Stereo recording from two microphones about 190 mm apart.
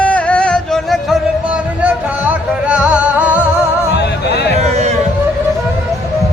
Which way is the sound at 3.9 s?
60° left (ahead or behind).